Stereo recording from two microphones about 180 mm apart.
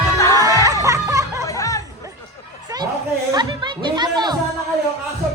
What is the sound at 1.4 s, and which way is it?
Music, 15° left (ahead or behind).